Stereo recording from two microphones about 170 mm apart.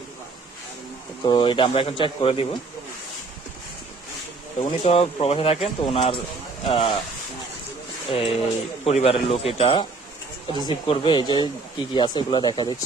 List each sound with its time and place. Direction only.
1.3 s speech: 30° left (ahead or behind)
4.8 s speech: 35° left (ahead or behind)
8.0 s speech: 35° left (ahead or behind)
10.8 s speech: 30° left (ahead or behind)